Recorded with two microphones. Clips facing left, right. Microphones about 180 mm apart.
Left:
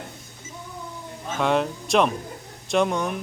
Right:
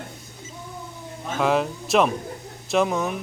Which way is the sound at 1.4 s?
Centre (ahead or behind).